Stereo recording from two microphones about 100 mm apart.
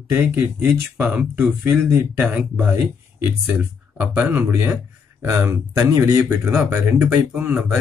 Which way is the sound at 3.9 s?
15° right (ahead or behind).